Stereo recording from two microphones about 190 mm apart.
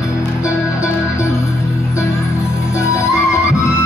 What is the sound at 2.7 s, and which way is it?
Music, 15° left (ahead or behind).